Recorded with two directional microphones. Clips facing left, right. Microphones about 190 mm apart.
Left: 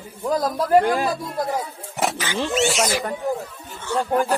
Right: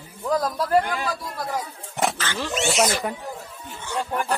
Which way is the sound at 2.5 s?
Centre (ahead or behind).